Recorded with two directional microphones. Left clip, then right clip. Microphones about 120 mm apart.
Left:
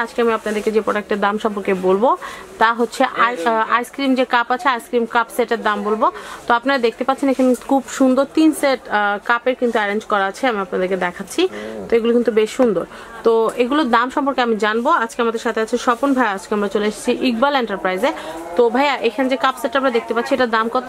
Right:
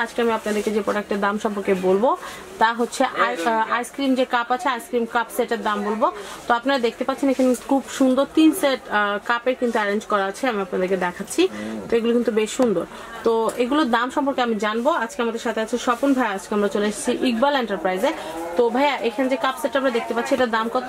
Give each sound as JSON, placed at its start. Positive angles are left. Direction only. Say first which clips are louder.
{"t": 0.2, "sound": "a woman's voice", "louder": "left 4 dB", "side_deg": 40}